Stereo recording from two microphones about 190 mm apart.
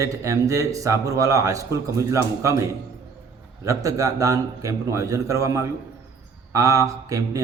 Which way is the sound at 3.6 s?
15° right (ahead or behind).